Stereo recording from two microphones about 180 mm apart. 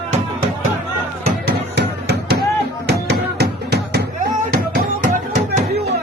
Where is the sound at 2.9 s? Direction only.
60° right (ahead or behind).